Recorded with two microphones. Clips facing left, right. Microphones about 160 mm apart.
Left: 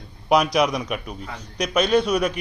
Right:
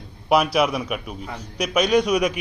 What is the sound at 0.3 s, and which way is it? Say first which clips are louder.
A man's voice: even; 5° right (ahead or behind).